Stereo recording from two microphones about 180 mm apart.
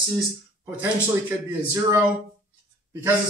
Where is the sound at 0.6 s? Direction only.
10° right (ahead or behind).